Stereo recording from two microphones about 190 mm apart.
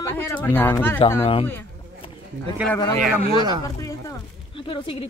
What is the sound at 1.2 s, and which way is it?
Speech, 30° left (ahead or behind).